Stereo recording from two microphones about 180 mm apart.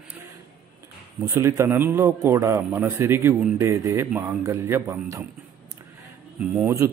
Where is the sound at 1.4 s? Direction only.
15° right (ahead or behind).